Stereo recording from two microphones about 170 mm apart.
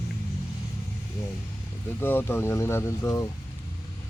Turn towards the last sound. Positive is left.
turn(degrees=15)  # may be behind; listen again after turning